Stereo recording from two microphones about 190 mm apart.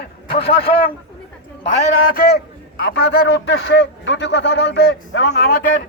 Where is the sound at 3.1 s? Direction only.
60° left (ahead or behind).